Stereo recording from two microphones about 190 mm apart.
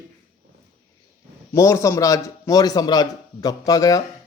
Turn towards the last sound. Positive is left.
turn(degrees=20)  # may be behind; listen again after turning